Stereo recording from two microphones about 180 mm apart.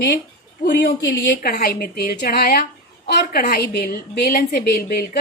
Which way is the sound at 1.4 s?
55° left (ahead or behind).